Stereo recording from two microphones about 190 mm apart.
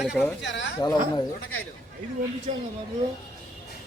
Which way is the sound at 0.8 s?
20° left (ahead or behind).